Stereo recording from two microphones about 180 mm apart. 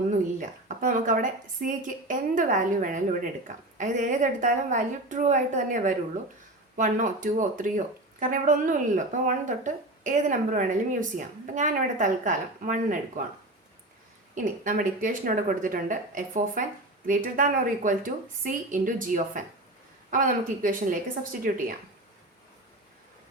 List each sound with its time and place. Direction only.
0.1 s speech: 45° right (ahead or behind)
14.3 s speech: 50° right (ahead or behind)